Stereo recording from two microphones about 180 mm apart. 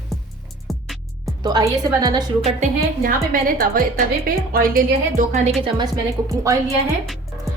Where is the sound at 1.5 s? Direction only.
20° right (ahead or behind).